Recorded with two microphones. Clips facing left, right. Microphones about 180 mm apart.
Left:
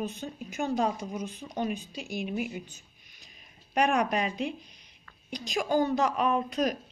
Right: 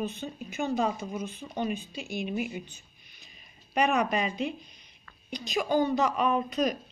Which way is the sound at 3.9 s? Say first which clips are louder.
Even; 5° right (ahead or behind).